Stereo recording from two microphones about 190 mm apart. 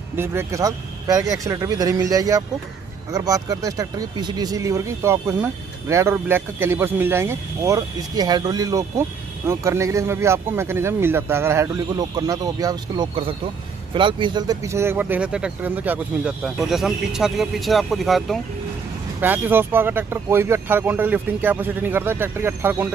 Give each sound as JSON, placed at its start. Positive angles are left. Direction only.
{"t": 0.1, "sound": "speech", "side_deg": -10}
{"t": 19.2, "sound": "speech", "side_deg": -10}